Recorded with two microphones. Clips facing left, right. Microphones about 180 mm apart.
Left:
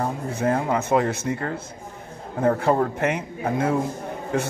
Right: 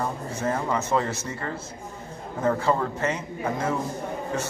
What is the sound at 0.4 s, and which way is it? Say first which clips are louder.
Speech: left 4 dB; 60° left (ahead or behind).